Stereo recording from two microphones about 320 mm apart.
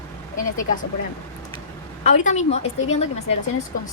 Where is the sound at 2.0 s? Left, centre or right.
Left.